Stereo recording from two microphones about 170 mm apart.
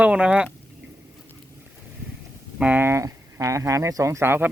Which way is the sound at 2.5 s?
10° right (ahead or behind).